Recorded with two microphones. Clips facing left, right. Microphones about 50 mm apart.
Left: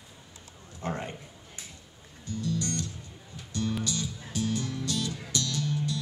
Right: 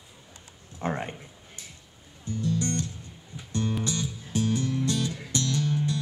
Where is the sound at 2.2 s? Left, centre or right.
Right.